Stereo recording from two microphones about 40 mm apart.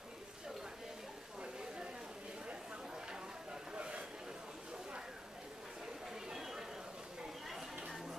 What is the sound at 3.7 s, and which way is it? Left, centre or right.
Vehicle, right.